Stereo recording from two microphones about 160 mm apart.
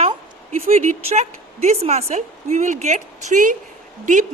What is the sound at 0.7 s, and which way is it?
A woman's voice, 45° right (ahead or behind).